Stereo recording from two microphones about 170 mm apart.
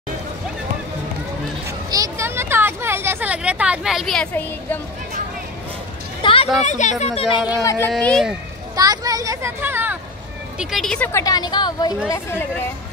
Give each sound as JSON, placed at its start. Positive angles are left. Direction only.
{"t": 1.9, "sound": "a sound", "side_deg": -20}
{"t": 6.2, "sound": "a sound", "side_deg": 30}
{"t": 6.6, "sound": "speech", "side_deg": 45}
{"t": 7.6, "sound": "speech", "side_deg": 20}
{"t": 7.9, "sound": "speech", "side_deg": 0}
{"t": 8.7, "sound": "speech", "side_deg": -20}
{"t": 10.6, "sound": "speech", "side_deg": 0}
{"t": 11.1, "sound": "a woman's voice", "side_deg": 20}
{"t": 12.1, "sound": "speech", "side_deg": 15}